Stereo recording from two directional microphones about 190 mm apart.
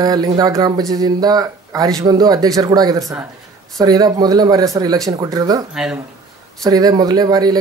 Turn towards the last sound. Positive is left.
turn(degrees=-20)  # may be behind; listen again after turning